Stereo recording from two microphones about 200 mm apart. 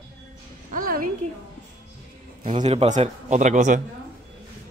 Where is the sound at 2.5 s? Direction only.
25° right (ahead or behind).